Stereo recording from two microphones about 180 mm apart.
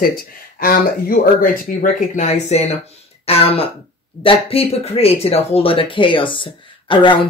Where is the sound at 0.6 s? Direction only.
55° left (ahead or behind).